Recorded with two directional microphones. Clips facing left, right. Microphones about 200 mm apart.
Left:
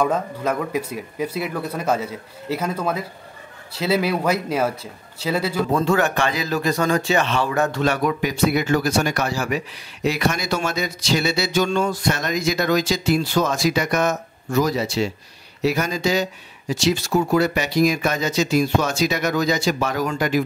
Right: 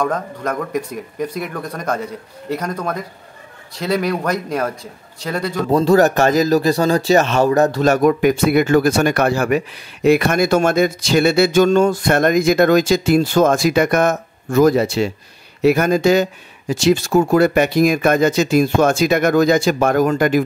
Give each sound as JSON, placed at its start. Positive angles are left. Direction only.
{"t": 0.0, "sound": "a man's voice", "side_deg": 5}
{"t": 5.7, "sound": "speech", "side_deg": -35}